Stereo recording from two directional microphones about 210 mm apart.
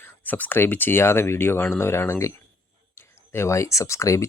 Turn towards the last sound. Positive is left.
turn(degrees=15)  # may be behind; listen again after turning